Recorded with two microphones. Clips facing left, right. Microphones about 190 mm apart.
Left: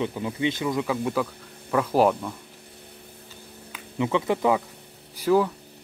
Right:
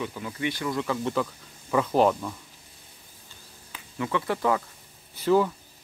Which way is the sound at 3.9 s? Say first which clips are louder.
Left 4 dB; 20° left (ahead or behind).